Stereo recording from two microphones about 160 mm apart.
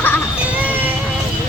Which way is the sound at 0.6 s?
10° right (ahead or behind).